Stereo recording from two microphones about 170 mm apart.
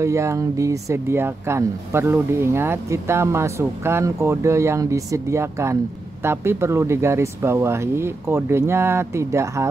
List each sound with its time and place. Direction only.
0.0 s speech: 15° right (ahead or behind)